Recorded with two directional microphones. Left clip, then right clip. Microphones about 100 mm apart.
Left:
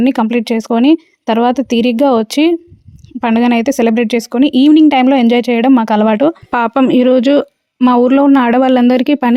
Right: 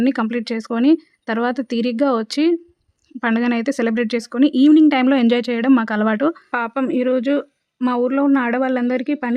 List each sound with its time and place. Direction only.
0.0 s speech: 45° left (ahead or behind)
6.8 s speech: 90° left